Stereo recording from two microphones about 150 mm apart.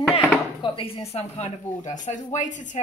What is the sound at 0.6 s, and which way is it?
Speech, 35° left (ahead or behind).